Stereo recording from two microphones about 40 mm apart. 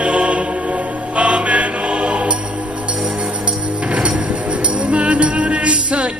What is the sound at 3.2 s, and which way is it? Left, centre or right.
Music, right.